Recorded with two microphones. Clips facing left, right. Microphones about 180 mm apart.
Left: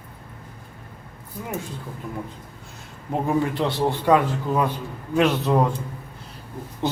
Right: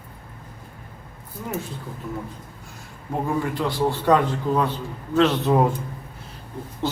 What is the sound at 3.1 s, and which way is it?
Speech, 20° left (ahead or behind).